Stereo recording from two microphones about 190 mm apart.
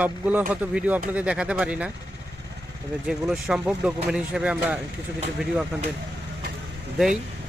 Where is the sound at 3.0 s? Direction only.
5° right (ahead or behind).